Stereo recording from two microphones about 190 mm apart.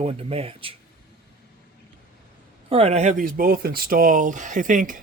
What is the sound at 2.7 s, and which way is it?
Speech, 35° right (ahead or behind).